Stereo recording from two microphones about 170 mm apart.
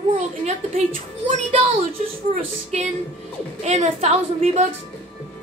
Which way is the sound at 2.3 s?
45° right (ahead or behind).